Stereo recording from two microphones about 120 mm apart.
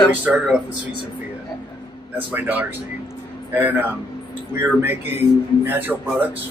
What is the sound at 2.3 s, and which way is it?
Speech, 15° right (ahead or behind).